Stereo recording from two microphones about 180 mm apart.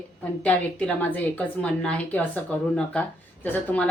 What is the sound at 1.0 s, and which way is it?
Speech, 10° left (ahead or behind).